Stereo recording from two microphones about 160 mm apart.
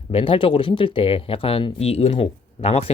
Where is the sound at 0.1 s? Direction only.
35° left (ahead or behind).